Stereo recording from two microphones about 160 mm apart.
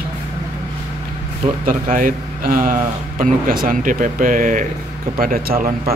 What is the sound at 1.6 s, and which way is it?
Speech, 60° right (ahead or behind).